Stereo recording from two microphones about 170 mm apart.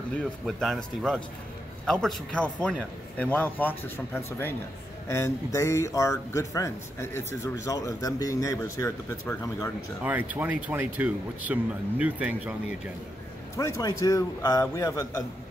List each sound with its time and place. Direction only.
0.1 s speech: centre (ahead or behind); by 9.7 s 15° left (ahead or behind)
10.0 s speech: 10° right (ahead or behind)
13.6 s a man's voice: 20° left (ahead or behind)